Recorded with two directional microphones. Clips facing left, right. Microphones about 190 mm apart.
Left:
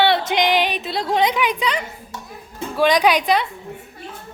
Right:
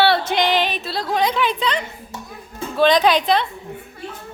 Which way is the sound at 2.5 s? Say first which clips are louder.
Right 1 dB; 10° left (ahead or behind).